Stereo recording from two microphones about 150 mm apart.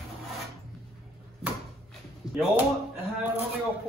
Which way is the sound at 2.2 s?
25° left (ahead or behind).